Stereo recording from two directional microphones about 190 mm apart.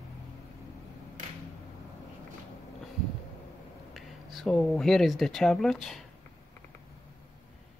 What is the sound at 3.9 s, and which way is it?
Speech, centre (ahead or behind).